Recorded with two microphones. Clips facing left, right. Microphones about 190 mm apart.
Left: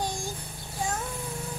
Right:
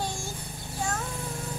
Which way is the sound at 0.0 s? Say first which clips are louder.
Left 1 dB; 15° left (ahead or behind).